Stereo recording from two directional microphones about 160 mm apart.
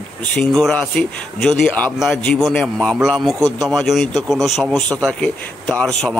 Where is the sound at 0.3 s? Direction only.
5° left (ahead or behind).